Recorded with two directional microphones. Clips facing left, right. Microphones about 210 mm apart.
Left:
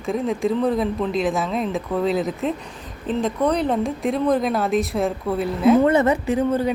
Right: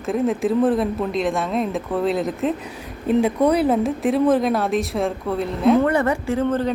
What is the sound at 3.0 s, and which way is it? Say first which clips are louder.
A woman's voice: right 4 dB; 10° right (ahead or behind).